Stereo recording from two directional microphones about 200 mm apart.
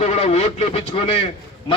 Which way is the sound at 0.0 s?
35° left (ahead or behind).